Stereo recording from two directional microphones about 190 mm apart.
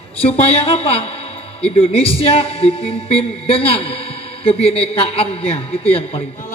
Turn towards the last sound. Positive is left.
turn(degrees=30)  # may be behind; listen again after turning